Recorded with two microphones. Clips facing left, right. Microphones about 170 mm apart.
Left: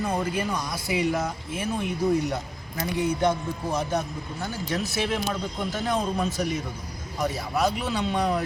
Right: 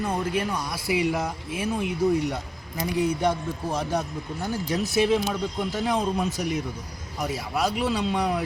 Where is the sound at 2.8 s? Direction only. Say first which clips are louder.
Right 1 dB; 10° right (ahead or behind).